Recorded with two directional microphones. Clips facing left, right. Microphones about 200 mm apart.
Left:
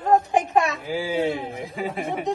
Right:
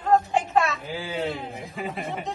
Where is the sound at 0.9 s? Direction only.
Centre (ahead or behind).